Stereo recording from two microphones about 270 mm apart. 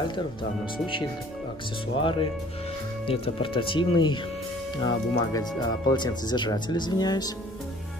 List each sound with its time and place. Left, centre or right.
0.1 s speech: centre